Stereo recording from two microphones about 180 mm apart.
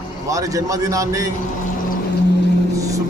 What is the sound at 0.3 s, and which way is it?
A man's voice, 20° right (ahead or behind).